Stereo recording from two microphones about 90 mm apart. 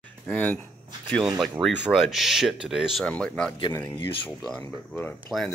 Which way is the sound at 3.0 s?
10° left (ahead or behind).